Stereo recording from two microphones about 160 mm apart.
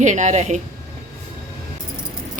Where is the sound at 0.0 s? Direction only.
50° right (ahead or behind).